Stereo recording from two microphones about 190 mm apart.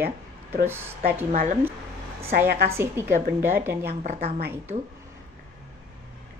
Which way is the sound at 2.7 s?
15° right (ahead or behind).